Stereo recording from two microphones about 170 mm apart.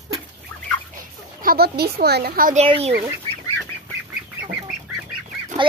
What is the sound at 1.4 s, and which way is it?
Speech, 60° right (ahead or behind).